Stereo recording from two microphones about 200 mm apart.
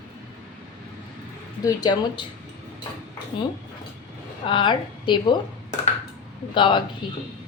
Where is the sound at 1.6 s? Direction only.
20° left (ahead or behind).